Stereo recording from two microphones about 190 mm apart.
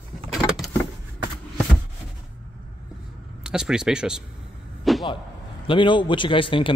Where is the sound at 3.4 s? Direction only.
5° right (ahead or behind).